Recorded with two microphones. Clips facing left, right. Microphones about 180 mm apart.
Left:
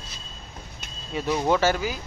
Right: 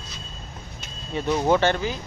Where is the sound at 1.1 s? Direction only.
5° left (ahead or behind).